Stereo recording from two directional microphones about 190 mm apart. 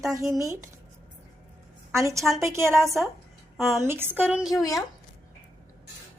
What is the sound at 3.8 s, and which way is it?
Speech, 10° right (ahead or behind).